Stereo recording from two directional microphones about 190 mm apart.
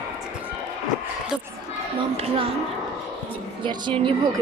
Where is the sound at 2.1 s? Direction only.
30° right (ahead or behind).